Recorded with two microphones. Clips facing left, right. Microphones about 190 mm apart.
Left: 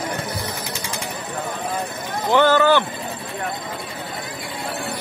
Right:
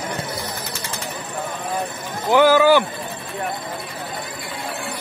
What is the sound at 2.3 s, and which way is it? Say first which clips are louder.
Speech: right 2 dB; 10° right (ahead or behind).